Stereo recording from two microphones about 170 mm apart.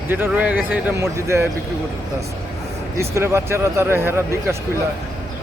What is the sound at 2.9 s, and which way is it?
Speech, 15° right (ahead or behind).